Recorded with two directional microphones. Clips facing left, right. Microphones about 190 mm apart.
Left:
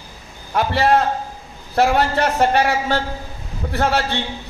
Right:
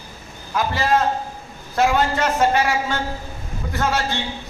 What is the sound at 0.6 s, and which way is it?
A man's voice, 65° left (ahead or behind).